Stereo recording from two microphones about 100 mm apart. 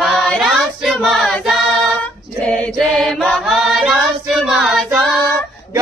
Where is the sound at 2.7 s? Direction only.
Centre (ahead or behind).